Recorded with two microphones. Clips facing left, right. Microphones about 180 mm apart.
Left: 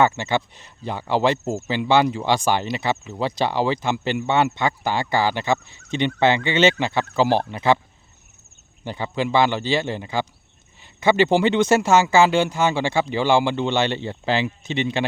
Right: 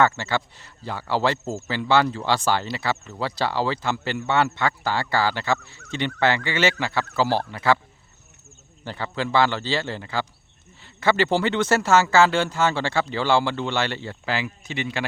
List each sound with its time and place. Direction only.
0.0 s speech: 20° left (ahead or behind)
8.8 s speech: 15° left (ahead or behind)